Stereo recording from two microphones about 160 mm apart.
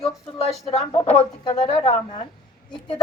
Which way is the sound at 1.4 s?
30° left (ahead or behind).